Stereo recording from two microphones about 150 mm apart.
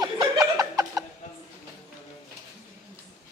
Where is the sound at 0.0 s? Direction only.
20° right (ahead or behind).